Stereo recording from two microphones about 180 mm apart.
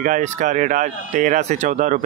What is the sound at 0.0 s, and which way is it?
Speech, 45° right (ahead or behind).